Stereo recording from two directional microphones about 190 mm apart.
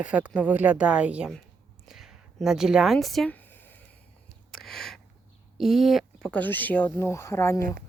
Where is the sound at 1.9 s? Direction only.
Centre (ahead or behind).